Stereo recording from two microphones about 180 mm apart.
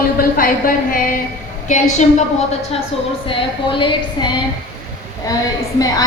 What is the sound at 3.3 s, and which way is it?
Speech, 25° left (ahead or behind).